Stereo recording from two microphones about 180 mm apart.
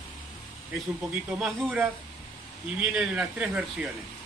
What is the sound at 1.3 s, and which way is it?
Speech, 5° right (ahead or behind).